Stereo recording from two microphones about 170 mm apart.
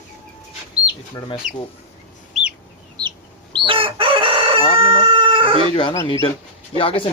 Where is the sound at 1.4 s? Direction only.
50° right (ahead or behind).